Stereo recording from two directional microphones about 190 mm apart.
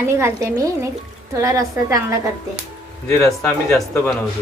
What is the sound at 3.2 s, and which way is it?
Speech, 15° left (ahead or behind).